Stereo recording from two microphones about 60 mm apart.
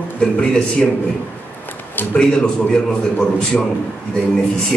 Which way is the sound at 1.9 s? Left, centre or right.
Left.